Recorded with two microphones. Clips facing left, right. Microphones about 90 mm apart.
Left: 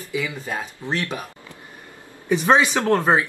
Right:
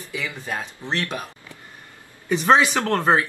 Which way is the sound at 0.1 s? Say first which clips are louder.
Left 3 dB; 15° left (ahead or behind).